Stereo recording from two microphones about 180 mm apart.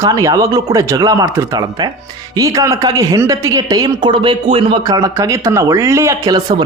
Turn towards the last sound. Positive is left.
turn(degrees=-20)  # may be behind; listen again after turning